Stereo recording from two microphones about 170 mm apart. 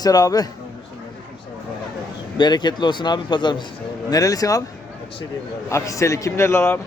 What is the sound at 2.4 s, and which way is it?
Speech, 25° left (ahead or behind).